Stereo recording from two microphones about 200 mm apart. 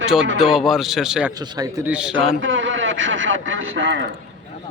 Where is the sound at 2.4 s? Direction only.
70° right (ahead or behind).